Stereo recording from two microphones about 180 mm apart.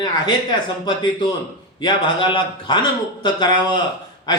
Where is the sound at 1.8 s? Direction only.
25° left (ahead or behind).